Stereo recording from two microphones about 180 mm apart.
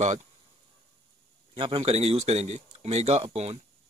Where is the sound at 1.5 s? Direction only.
30° right (ahead or behind).